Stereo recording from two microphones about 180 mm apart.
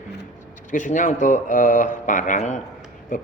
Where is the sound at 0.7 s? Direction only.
45° left (ahead or behind).